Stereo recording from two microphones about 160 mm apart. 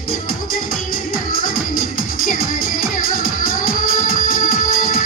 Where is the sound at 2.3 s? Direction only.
60° left (ahead or behind).